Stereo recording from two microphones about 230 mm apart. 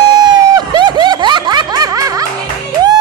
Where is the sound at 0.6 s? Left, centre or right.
Centre.